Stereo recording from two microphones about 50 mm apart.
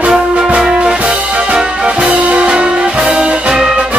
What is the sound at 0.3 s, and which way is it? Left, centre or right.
Music, right.